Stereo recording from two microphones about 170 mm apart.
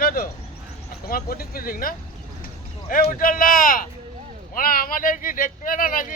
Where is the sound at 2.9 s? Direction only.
55° left (ahead or behind).